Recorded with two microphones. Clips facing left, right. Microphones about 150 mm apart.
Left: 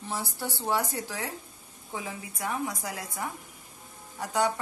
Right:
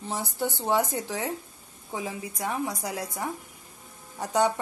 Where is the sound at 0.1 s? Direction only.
20° right (ahead or behind).